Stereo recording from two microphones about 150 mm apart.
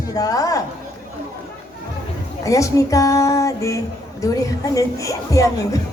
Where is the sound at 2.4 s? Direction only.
20° left (ahead or behind).